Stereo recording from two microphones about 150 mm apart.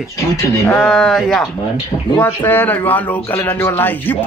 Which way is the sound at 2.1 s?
15° left (ahead or behind).